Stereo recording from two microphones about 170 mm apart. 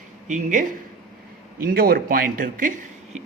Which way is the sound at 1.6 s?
60° right (ahead or behind).